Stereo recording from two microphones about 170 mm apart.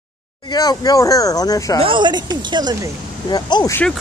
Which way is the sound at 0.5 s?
25° left (ahead or behind).